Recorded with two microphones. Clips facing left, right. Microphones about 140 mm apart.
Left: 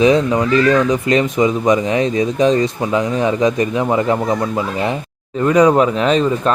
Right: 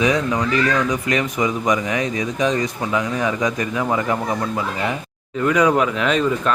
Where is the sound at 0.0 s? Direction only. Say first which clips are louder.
Left 6 dB; 25° left (ahead or behind).